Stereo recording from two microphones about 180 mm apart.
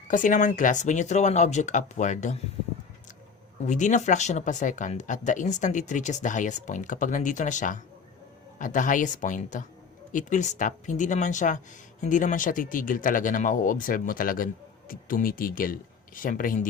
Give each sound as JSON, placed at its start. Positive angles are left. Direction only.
{"t": 0.1, "sound": "speech", "side_deg": 45}
{"t": 3.7, "sound": "speech", "side_deg": 40}